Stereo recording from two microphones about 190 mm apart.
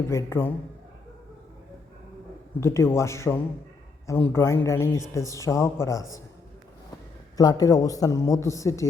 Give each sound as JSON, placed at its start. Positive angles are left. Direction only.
{"t": 0.1, "sound": "a man's voice", "side_deg": 15}
{"t": 2.6, "sound": "a man's voice", "side_deg": 15}
{"t": 7.3, "sound": "a man's voice", "side_deg": 20}